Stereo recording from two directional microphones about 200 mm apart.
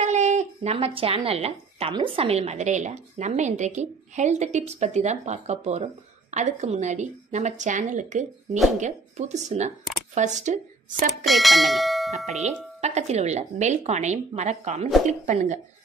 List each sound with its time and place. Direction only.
0.0 s speech: 35° right (ahead or behind)
11.2 s speech: centre (ahead or behind)
12.8 s speech: 35° right (ahead or behind)